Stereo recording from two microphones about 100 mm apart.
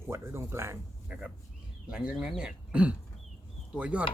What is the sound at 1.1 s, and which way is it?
Speech, 15° right (ahead or behind).